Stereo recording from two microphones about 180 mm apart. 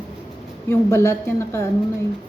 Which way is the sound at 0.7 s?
15° left (ahead or behind).